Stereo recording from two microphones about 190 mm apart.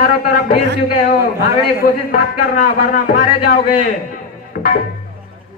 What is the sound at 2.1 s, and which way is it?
Speech, 45° left (ahead or behind).